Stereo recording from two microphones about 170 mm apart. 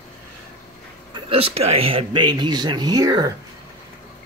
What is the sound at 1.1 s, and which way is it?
Speech, 35° right (ahead or behind).